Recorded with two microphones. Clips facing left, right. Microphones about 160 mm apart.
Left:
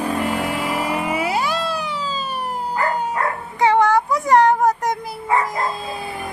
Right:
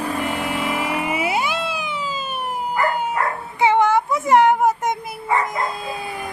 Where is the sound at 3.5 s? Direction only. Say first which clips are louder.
Left 1 dB; 20° right (ahead or behind).